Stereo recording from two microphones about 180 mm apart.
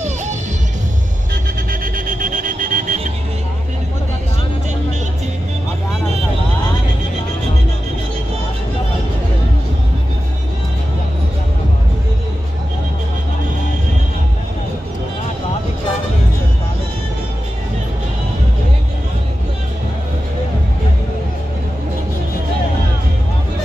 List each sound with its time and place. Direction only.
1.7 s music: 50° right (ahead or behind)